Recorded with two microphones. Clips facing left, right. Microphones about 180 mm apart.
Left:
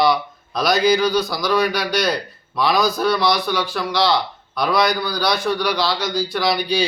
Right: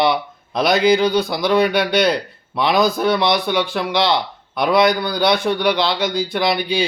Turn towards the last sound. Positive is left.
turn(degrees=-20)  # may be behind; listen again after turning